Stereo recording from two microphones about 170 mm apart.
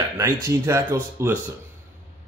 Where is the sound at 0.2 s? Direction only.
15° right (ahead or behind).